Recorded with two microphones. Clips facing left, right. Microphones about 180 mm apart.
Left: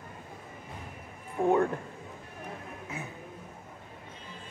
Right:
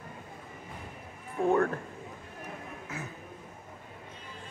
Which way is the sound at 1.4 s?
15° left (ahead or behind).